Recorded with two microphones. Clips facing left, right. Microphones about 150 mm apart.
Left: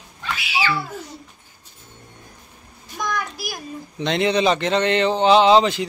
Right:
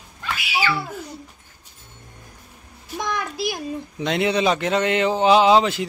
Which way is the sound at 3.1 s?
25° right (ahead or behind).